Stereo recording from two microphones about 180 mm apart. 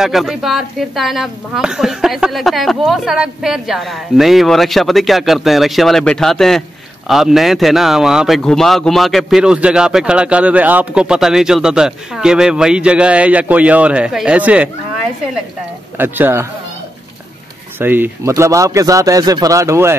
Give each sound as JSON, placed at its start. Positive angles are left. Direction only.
{"t": 0.0, "sound": "a man's voice", "side_deg": 0}
{"t": 16.0, "sound": "speech", "side_deg": -10}
{"t": 17.7, "sound": "speech", "side_deg": -10}